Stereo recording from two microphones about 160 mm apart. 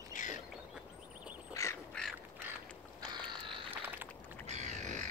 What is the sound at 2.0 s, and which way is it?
Duck, 5° left (ahead or behind).